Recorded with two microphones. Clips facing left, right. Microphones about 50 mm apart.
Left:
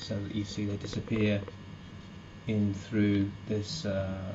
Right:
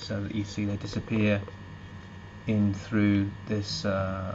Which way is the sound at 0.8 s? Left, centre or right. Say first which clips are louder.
Right 3 dB; right.